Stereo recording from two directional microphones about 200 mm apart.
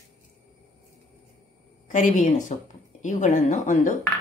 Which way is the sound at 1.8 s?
40° left (ahead or behind).